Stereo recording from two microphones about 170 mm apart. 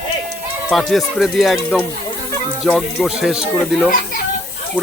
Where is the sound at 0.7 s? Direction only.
Centre (ahead or behind).